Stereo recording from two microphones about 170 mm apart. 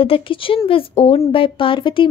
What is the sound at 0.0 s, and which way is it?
A woman's voice, 30° left (ahead or behind).